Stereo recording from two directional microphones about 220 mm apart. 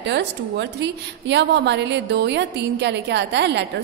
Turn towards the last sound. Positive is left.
turn(degrees=-55)  # may be behind; listen again after turning